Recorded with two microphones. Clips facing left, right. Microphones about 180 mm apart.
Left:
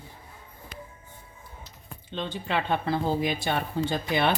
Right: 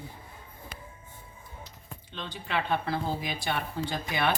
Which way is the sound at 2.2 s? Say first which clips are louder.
Left 4 dB; 25° left (ahead or behind).